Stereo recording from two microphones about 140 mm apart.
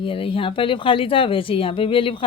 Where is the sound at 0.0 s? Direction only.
40° left (ahead or behind).